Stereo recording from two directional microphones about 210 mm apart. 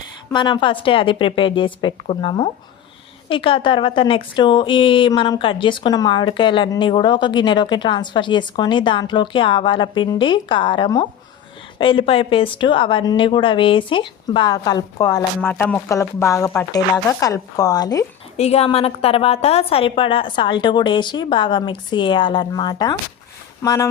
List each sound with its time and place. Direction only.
0.3 s a woman's voice: 20° left (ahead or behind)
18.3 s a woman's voice: 30° left (ahead or behind)